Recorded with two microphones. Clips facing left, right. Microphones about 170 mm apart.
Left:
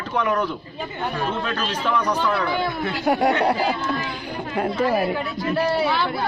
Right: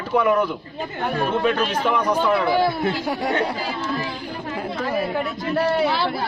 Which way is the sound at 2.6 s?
30° right (ahead or behind).